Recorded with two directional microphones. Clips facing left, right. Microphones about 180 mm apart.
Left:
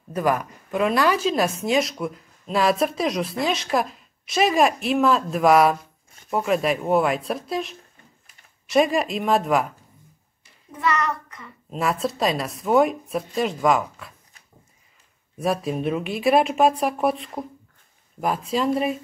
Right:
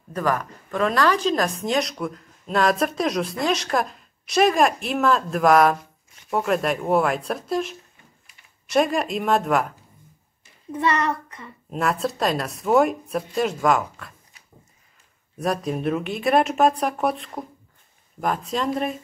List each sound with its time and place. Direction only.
0.1 s a woman's voice: 10° left (ahead or behind)
10.8 s a child's voice: 30° right (ahead or behind)
11.7 s speech: centre (ahead or behind)
15.3 s speech: centre (ahead or behind)